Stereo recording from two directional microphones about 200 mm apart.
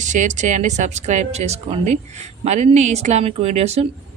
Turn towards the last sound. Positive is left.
turn(degrees=-30)  # may be behind; listen again after turning